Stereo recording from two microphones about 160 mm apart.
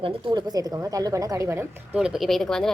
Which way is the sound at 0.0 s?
30° right (ahead or behind).